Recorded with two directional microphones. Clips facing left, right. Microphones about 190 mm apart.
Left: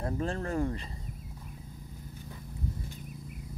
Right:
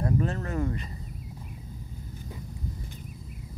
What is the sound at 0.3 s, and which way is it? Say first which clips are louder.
Speech: right 1 dB; 30° left (ahead or behind).